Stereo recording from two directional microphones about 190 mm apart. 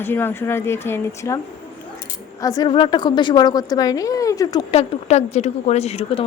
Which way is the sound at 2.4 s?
25° left (ahead or behind).